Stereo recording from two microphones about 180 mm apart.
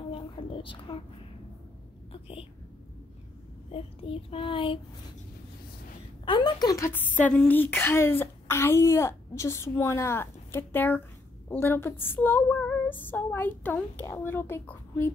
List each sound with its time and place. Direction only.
0.1 s a woman's voice: 30° left (ahead or behind)
3.7 s child singing: 30° left (ahead or behind)
6.2 s speech: 25° left (ahead or behind); by 15.1 s 10° left (ahead or behind)